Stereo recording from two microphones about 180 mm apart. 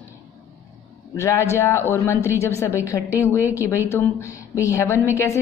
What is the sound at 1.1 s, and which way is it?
A woman's voice, 15° left (ahead or behind).